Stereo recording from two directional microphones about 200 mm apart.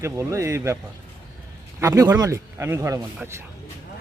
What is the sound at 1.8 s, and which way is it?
A man's voice, 15° right (ahead or behind).